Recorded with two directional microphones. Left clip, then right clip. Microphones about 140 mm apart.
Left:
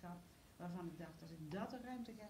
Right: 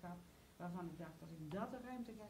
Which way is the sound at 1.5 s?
20° left (ahead or behind).